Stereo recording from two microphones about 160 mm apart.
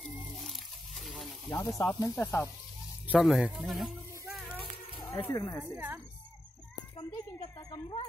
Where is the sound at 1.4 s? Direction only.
20° left (ahead or behind).